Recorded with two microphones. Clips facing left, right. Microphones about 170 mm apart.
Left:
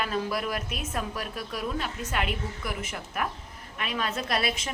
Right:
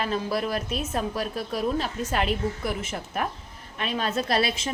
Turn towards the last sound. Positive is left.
turn(degrees=-30)  # may be behind; listen again after turning